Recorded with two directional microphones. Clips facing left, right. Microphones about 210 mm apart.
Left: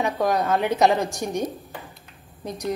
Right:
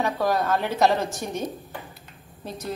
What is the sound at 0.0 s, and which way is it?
A woman's voice, 15° left (ahead or behind).